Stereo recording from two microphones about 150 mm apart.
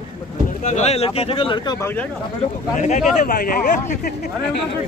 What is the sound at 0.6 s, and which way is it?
Speech, 50° left (ahead or behind).